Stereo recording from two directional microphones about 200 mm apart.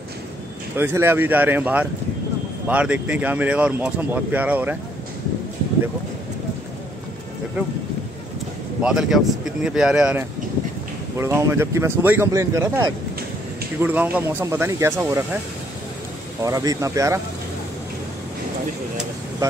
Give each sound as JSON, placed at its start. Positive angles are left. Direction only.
{"t": 0.7, "sound": "speech", "side_deg": -10}
{"t": 8.8, "sound": "speech", "side_deg": 0}
{"t": 16.4, "sound": "speech", "side_deg": -15}